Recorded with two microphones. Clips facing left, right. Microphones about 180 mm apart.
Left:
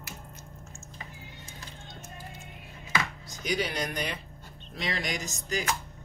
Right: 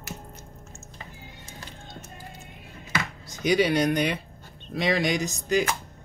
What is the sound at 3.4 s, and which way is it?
Speech, 70° right (ahead or behind).